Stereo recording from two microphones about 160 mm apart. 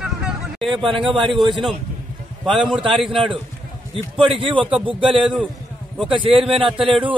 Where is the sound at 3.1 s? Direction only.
35° right (ahead or behind).